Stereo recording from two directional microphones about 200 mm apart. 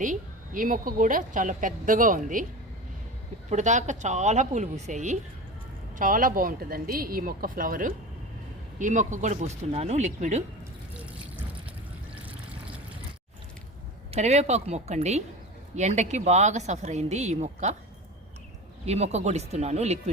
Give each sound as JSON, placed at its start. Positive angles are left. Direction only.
{"t": 0.0, "sound": "speech", "side_deg": -40}
{"t": 3.5, "sound": "speech", "side_deg": -35}
{"t": 14.1, "sound": "speech", "side_deg": -35}
{"t": 18.9, "sound": "speech", "side_deg": -35}